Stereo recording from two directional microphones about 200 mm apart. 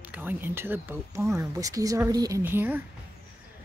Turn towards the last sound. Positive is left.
turn(degrees=-10)  # may be behind; listen again after turning